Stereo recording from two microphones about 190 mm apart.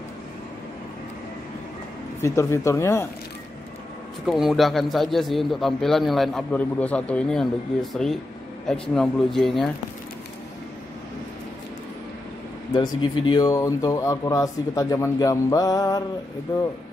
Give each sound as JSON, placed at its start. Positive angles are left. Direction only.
{"t": 2.2, "sound": "speech", "side_deg": 15}
{"t": 4.3, "sound": "a man's voice", "side_deg": 0}
{"t": 12.7, "sound": "speech", "side_deg": 25}